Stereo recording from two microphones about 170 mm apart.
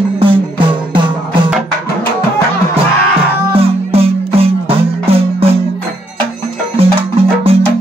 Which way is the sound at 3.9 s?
35° right (ahead or behind).